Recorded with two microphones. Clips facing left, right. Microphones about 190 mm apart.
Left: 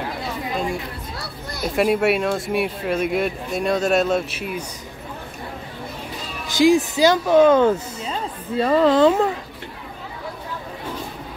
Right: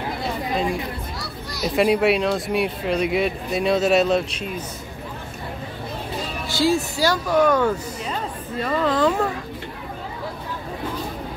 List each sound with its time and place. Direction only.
1.1 s a sound: 55° left (ahead or behind)
1.8 s speech: centre (ahead or behind)
6.4 s speech: 15° left (ahead or behind)